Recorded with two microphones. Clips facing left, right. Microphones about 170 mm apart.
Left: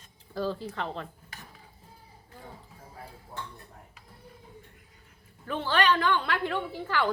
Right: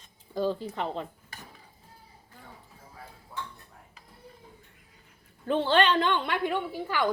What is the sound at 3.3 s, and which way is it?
Dishes, 45° left (ahead or behind).